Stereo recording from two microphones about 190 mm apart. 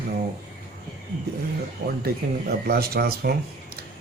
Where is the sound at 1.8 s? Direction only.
50° right (ahead or behind).